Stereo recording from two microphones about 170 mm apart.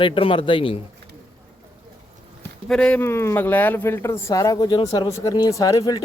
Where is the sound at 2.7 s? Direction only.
10° left (ahead or behind).